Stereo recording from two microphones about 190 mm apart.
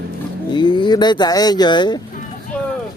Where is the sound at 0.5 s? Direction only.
25° left (ahead or behind).